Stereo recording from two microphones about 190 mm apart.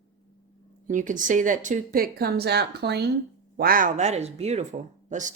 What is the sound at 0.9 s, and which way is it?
Speech, 40° right (ahead or behind).